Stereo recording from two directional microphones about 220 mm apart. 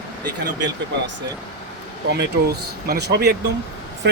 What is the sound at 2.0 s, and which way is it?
Speech, 50° right (ahead or behind).